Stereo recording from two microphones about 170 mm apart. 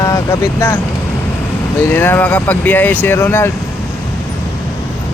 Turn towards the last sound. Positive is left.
turn(degrees=15)  # may be behind; listen again after turning